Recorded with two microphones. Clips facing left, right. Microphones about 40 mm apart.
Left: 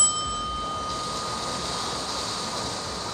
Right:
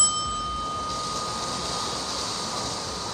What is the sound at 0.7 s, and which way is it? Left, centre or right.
Vehicle, left.